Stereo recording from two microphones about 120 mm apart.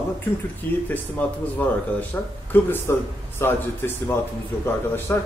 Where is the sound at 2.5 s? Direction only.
15° left (ahead or behind).